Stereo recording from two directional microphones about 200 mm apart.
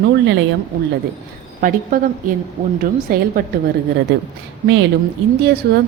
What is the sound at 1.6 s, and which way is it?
A woman's voice, 45° right (ahead or behind).